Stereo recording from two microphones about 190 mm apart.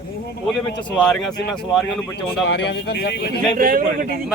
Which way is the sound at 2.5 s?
70° left (ahead or behind).